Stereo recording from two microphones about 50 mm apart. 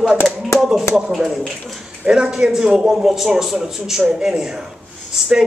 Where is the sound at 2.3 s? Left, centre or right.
Centre.